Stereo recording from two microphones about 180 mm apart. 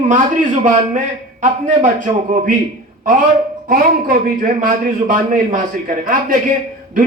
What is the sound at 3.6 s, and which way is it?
Speech, 55° right (ahead or behind).